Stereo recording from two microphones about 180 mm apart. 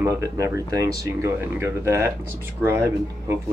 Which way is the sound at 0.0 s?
15° right (ahead or behind).